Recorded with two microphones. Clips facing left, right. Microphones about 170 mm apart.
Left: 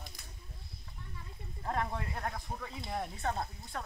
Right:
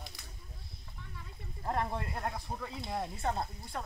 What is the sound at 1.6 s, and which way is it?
Speech, 15° right (ahead or behind).